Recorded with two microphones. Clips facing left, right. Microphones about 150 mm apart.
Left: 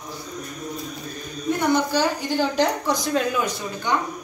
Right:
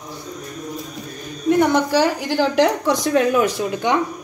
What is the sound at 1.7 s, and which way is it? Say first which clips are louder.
A woman's voice: right 4 dB; 85° right.